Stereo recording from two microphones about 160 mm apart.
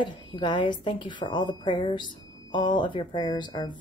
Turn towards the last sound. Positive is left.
turn(degrees=30)  # may be behind; listen again after turning